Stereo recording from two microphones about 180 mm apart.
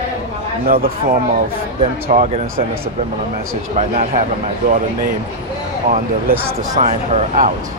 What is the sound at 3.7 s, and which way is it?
Speech, 40° right (ahead or behind).